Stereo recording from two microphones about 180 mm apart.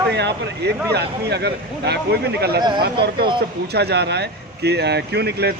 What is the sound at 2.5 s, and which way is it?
Speech, 25° right (ahead or behind).